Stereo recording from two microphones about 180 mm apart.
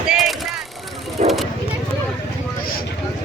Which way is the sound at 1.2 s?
40° right (ahead or behind).